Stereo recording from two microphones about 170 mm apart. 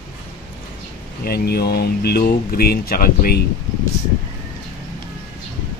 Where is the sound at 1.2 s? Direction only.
65° left (ahead or behind).